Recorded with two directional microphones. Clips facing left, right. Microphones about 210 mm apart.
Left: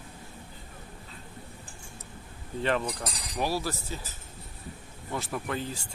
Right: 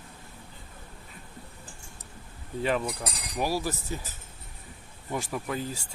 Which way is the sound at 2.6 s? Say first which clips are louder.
Right 1 dB; 5° right (ahead or behind).